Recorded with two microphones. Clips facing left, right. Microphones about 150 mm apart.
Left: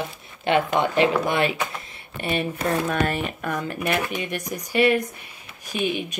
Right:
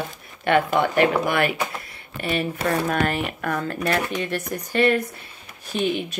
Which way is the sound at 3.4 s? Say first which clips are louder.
Right 2 dB; 15° left (ahead or behind).